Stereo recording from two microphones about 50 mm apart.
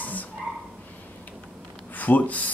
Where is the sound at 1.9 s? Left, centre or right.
Left.